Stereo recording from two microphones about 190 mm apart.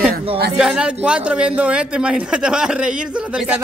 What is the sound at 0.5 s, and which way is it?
Speech, 5° right (ahead or behind).